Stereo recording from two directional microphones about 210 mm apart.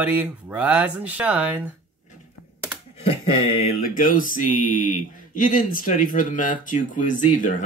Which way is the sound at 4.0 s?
40° left (ahead or behind).